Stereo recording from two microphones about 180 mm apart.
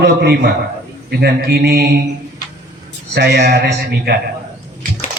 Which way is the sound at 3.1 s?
65° right (ahead or behind).